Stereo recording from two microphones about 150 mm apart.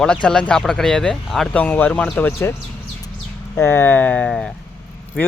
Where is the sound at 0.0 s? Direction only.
5° left (ahead or behind).